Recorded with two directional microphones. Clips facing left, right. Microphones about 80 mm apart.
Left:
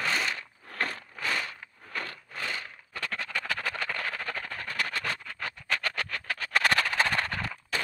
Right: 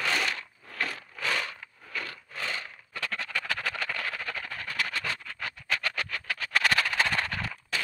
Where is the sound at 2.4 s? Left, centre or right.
Right.